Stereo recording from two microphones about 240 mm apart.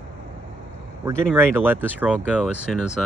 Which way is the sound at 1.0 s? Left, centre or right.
Centre.